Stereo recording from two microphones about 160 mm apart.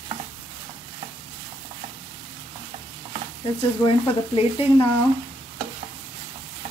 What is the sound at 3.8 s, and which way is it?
Stir, 35° left (ahead or behind).